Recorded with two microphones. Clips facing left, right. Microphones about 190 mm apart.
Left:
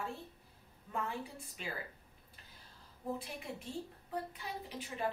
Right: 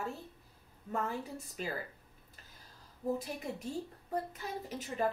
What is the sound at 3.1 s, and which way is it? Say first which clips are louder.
Speech: right 5 dB; 40° right (ahead or behind).